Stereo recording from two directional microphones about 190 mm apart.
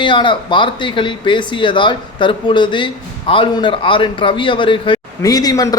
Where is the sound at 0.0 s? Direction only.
25° left (ahead or behind).